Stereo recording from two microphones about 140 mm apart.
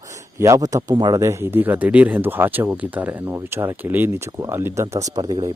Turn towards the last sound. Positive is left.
turn(degrees=-25)  # may be behind; listen again after turning